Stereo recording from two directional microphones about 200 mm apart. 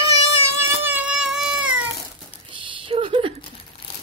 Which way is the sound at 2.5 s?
25° right (ahead or behind).